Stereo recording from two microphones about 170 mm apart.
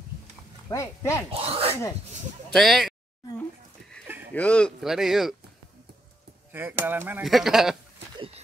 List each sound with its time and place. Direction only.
0.7 s speech: 20° left (ahead or behind)
1.3 s speech: 35° right (ahead or behind)
2.5 s speech: centre (ahead or behind)
4.3 s speech: 10° left (ahead or behind)
6.5 s speech: 10° right (ahead or behind)